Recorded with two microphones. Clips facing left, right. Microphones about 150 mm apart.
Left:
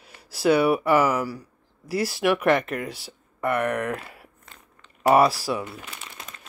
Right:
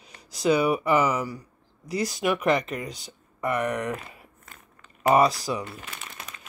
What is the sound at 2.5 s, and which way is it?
Speech, 60° left (ahead or behind).